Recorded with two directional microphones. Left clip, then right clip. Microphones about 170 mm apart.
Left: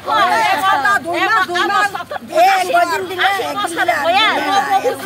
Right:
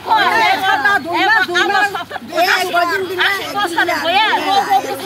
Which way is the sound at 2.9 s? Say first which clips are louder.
Even; 70° left (ahead or behind).